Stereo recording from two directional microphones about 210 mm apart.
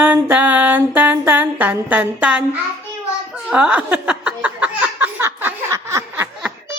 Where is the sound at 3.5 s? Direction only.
5° right (ahead or behind).